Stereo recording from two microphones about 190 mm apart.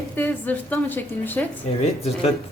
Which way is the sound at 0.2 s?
10° left (ahead or behind).